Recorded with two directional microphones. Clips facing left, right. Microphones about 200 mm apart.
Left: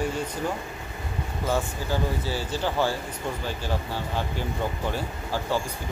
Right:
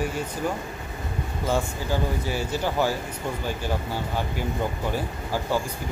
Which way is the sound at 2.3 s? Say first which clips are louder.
Right 1 dB; 15° right (ahead or behind).